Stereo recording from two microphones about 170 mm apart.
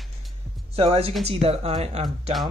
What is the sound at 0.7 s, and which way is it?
Speech, 35° right (ahead or behind).